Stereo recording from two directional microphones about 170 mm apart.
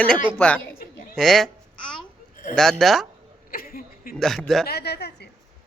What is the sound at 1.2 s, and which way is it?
Babbling, centre (ahead or behind).